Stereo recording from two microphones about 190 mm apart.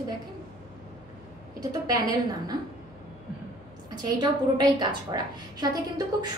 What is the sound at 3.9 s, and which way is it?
A woman's voice, 20° right (ahead or behind).